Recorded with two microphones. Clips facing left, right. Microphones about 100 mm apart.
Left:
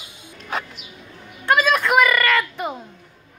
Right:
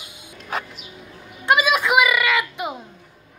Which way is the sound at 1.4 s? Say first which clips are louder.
Even; 15° right (ahead or behind).